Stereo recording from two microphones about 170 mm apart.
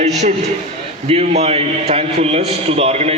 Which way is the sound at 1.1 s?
35° right (ahead or behind).